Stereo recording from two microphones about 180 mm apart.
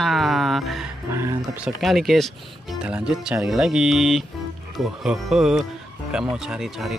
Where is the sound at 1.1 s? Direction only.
15° right (ahead or behind).